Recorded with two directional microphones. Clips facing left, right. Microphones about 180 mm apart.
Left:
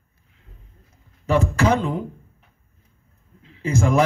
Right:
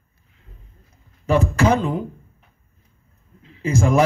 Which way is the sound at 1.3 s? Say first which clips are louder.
Right 1 dB; 20° right (ahead or behind).